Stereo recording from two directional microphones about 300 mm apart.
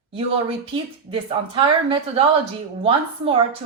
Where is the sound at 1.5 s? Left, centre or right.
Centre.